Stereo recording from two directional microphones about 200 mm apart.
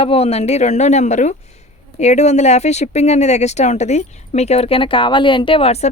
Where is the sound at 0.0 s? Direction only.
30° left (ahead or behind).